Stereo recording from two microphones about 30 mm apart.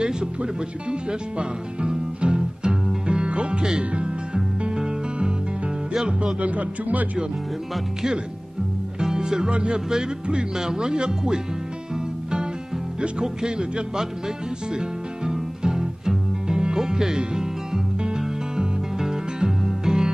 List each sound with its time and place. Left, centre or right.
0.0 s speech: right
1.4 s music: right
3.1 s music: right
6.4 s speech: right
9.0 s music: right
10.5 s speech: centre
13.2 s speech: right
14.7 s music: right